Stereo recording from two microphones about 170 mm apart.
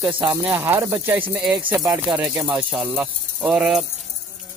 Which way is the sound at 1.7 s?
20° right (ahead or behind).